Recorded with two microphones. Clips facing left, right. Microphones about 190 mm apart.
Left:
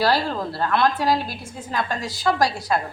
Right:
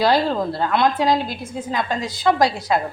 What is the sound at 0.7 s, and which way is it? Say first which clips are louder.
A woman's voice: right 1 dB; 20° right (ahead or behind).